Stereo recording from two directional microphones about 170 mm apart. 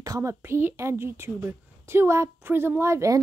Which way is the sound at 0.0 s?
20° right (ahead or behind).